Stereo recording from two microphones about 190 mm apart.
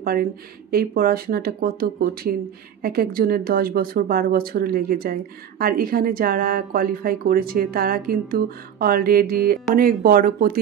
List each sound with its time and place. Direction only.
0.0 s speech: 50° right (ahead or behind)